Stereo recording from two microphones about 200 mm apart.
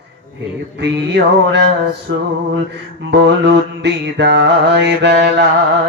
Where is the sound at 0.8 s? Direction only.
60° right (ahead or behind).